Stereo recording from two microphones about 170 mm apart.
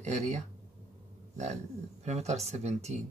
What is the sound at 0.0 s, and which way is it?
A man's voice, 40° right (ahead or behind).